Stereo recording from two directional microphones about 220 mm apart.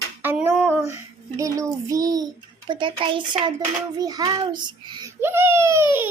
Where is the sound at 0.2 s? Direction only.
10° right (ahead or behind).